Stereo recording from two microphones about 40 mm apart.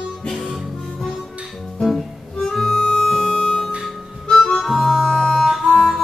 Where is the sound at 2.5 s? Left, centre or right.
Centre.